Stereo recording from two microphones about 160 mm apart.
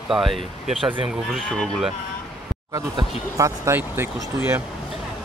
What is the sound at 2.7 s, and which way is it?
Speech, 20° right (ahead or behind).